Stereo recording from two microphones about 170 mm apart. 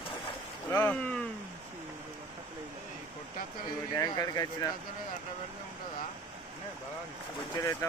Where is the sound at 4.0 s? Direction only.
20° left (ahead or behind).